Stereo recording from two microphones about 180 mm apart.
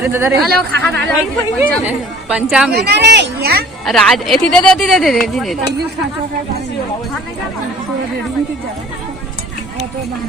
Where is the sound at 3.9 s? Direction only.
Centre (ahead or behind).